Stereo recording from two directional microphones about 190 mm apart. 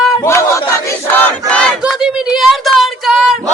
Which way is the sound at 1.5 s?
5° left (ahead or behind).